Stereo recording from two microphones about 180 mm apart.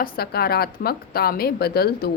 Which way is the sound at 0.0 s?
60° left (ahead or behind).